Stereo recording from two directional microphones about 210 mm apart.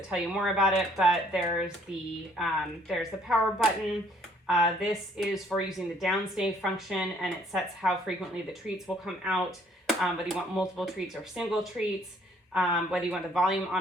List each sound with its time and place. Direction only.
0.1 s speech: centre (ahead or behind)